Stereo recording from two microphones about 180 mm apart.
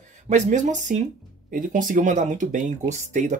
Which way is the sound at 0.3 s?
40° right (ahead or behind).